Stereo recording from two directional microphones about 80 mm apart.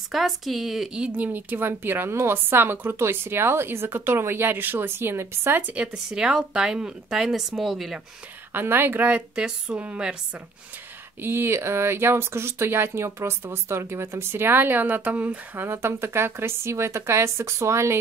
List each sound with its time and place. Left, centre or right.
0.1 s speech: centre; by 5.6 s right
5.7 s speech: centre
8.5 s speech: right
11.1 s speech: right